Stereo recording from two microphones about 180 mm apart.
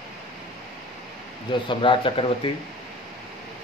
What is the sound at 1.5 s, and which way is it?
Speech, 25° left (ahead or behind).